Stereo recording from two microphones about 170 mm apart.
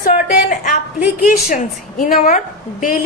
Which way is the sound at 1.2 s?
55° left (ahead or behind).